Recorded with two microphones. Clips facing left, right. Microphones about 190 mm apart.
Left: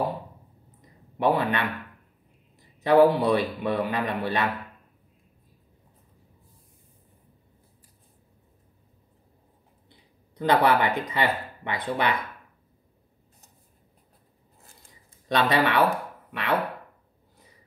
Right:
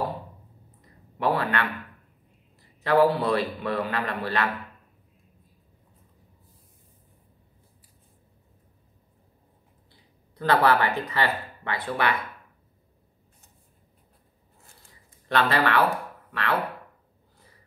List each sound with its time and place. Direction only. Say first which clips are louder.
0.7 s a sound: left 3 dB; 20° left (ahead or behind)
2.8 s a man's voice: left 3 dB; 20° left (ahead or behind)
9.8 s speech: left 2 dB; 20° left (ahead or behind)
15.2 s speech: left 1 dB; 15° left (ahead or behind)